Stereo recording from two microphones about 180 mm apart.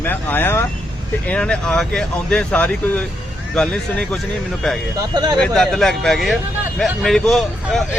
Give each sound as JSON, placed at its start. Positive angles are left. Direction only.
{"t": 0.0, "sound": "speech", "side_deg": 10}
{"t": 5.1, "sound": "speech", "side_deg": -25}
{"t": 5.4, "sound": "speech", "side_deg": 0}